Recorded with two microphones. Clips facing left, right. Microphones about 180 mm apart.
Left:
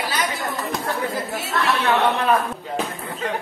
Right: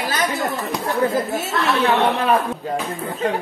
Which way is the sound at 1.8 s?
30° right (ahead or behind).